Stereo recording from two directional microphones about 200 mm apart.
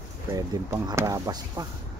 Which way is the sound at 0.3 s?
20° right (ahead or behind).